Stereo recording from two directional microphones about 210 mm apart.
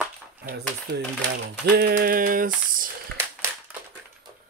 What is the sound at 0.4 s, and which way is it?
Speech, 50° right (ahead or behind).